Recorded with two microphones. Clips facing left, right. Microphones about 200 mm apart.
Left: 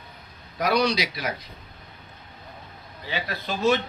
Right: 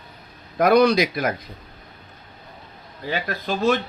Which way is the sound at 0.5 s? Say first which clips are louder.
Right 7 dB; 55° right (ahead or behind).